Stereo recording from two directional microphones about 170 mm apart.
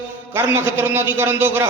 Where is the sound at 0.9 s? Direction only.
15° right (ahead or behind).